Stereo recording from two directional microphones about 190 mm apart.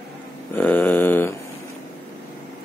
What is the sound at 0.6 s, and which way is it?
Speech, 10° left (ahead or behind).